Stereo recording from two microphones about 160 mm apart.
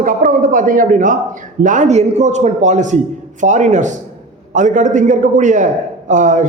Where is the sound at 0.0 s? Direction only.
60° right (ahead or behind).